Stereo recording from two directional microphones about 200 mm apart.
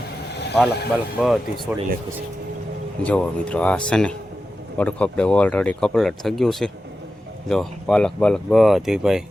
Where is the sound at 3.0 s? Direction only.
5° left (ahead or behind).